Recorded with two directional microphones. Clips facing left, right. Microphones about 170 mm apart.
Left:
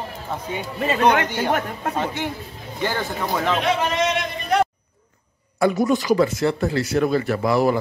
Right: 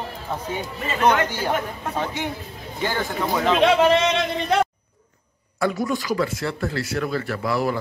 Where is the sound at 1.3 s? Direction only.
60° left (ahead or behind).